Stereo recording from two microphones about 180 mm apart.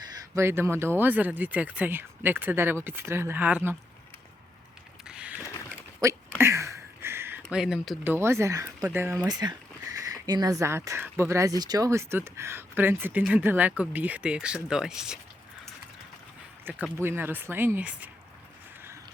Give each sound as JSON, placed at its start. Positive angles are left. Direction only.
{"t": 0.3, "sound": "speech", "side_deg": -15}
{"t": 5.0, "sound": "a sound", "side_deg": -5}
{"t": 6.0, "sound": "speech", "side_deg": -15}
{"t": 16.7, "sound": "speech", "side_deg": -10}